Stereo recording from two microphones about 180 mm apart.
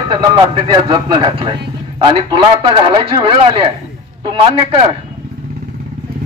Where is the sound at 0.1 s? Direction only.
25° right (ahead or behind).